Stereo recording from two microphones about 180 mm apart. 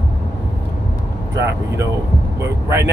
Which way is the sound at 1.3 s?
15° right (ahead or behind).